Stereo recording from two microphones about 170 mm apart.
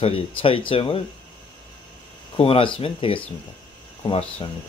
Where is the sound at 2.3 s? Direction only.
35° left (ahead or behind).